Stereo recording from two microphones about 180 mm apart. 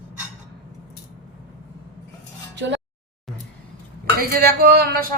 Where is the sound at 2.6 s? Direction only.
80° right.